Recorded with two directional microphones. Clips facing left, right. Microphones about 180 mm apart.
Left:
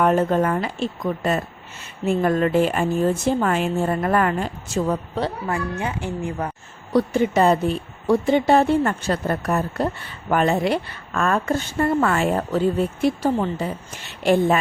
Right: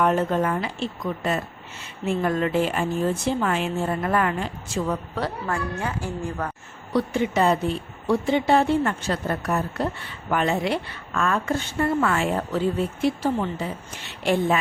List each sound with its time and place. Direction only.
0.0 s a woman's voice: 45° left (ahead or behind)
5.1 s a woman's voice: 25° left (ahead or behind)
6.9 s a woman's voice: 40° left (ahead or behind)